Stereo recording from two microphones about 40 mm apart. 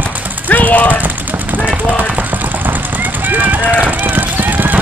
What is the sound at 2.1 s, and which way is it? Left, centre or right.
Vehicle, right.